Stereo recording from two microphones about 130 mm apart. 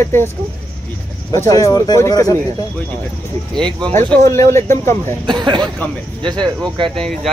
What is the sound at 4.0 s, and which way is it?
Speech, 20° left (ahead or behind).